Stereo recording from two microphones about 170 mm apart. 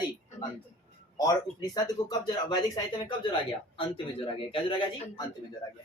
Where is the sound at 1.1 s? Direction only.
25° left (ahead or behind).